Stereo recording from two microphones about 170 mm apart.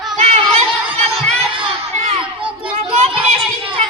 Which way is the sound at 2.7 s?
40° right (ahead or behind).